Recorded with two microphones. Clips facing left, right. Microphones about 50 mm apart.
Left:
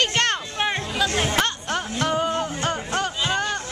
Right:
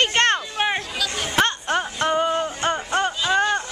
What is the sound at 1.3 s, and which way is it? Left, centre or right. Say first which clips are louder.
Music: right 3 dB; centre.